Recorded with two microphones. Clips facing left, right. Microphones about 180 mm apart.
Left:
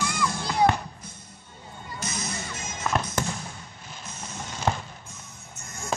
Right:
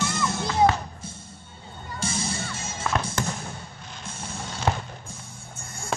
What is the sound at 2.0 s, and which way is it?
Whip, 30° right (ahead or behind).